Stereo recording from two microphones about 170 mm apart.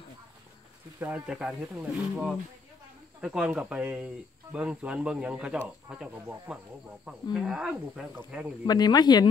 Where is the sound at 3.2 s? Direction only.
5° right (ahead or behind).